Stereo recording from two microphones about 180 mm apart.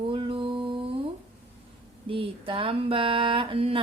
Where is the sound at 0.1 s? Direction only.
30° right (ahead or behind).